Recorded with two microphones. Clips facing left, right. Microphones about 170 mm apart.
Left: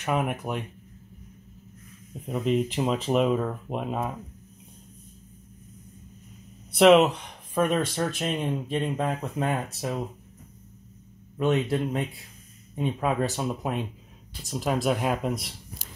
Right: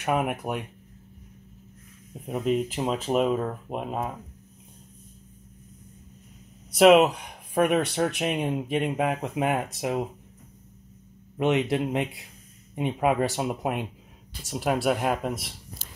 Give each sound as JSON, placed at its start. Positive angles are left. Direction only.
{"t": 0.0, "sound": "speech", "side_deg": -10}
{"t": 2.2, "sound": "speech", "side_deg": -5}
{"t": 6.8, "sound": "speech", "side_deg": -10}
{"t": 11.7, "sound": "speech", "side_deg": -20}